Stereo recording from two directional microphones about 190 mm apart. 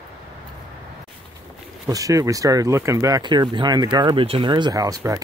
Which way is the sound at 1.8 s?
15° right (ahead or behind).